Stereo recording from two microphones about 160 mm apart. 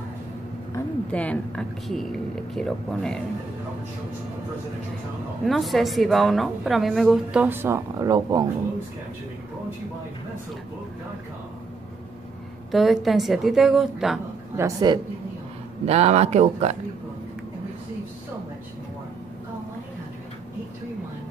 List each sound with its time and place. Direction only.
0.7 s a woman's voice: 10° left (ahead or behind)
5.4 s a woman's voice: centre (ahead or behind)
7.4 s speech: 15° right (ahead or behind)
12.7 s a woman's voice: centre (ahead or behind)
14.6 s speech: 25° right (ahead or behind)
15.8 s speech: 40° right (ahead or behind)